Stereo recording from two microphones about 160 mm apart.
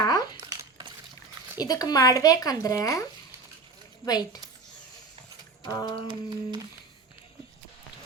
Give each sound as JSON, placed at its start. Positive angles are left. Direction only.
{"t": 0.1, "sound": "a sound", "side_deg": 25}
{"t": 0.5, "sound": "cutlery", "side_deg": -25}
{"t": 1.5, "sound": "speech", "side_deg": 25}
{"t": 4.0, "sound": "speech", "side_deg": 25}
{"t": 5.6, "sound": "speech", "side_deg": 25}
{"t": 6.1, "sound": "humming", "side_deg": -25}